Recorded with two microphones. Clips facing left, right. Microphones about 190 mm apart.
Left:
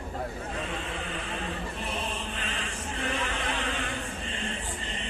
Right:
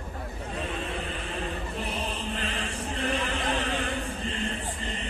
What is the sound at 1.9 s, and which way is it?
Chant, 35° right (ahead or behind).